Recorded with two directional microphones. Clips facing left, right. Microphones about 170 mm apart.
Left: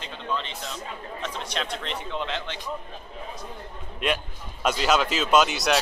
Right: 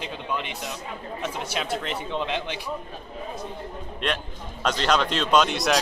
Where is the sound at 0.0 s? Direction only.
10° right (ahead or behind).